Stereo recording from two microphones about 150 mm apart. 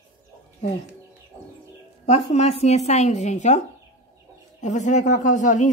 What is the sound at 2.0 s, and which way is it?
Speech, 45° left (ahead or behind).